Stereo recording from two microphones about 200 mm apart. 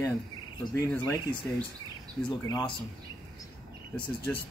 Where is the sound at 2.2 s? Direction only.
20° left (ahead or behind).